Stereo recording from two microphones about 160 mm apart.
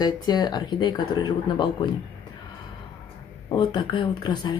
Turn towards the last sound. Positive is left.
turn(degrees=30)  # may be behind; listen again after turning